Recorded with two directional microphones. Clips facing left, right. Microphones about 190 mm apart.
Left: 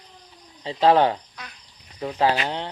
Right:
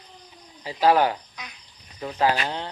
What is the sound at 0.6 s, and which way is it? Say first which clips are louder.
Speech: left 2 dB; 25° left (ahead or behind).